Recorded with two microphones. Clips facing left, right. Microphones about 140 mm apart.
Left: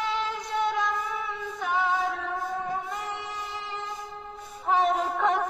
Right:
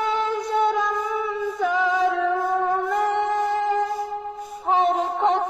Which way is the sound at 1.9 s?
90° right.